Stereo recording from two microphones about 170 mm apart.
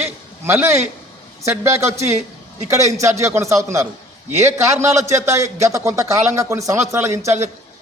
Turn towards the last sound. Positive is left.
turn(degrees=-15)  # may be behind; listen again after turning